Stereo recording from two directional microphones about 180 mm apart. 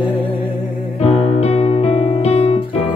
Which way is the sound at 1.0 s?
35° left (ahead or behind).